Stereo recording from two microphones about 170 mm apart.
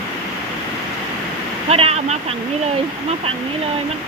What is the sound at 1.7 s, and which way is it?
Speech, 35° right (ahead or behind).